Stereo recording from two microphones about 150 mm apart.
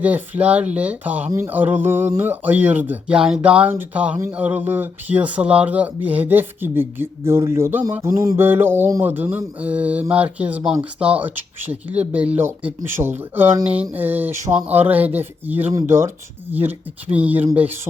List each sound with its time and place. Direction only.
0.0 s speech: 10° right (ahead or behind)